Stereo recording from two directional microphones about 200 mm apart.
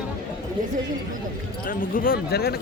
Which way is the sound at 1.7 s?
45° left (ahead or behind).